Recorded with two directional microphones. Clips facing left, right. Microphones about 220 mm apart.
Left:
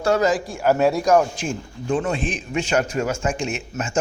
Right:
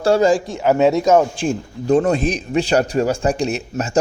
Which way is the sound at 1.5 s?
40° right (ahead or behind).